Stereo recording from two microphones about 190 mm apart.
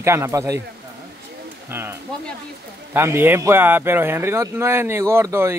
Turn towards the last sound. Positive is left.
turn(degrees=-15)  # may be behind; listen again after turning